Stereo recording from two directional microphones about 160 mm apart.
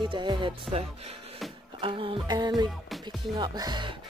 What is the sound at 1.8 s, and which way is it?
Speech, 30° right (ahead or behind).